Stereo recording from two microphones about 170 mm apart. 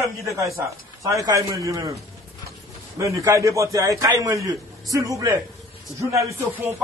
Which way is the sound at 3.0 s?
20° right (ahead or behind).